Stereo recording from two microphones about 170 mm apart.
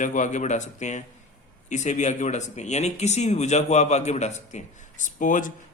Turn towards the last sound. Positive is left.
turn(degrees=50)  # may be behind; listen again after turning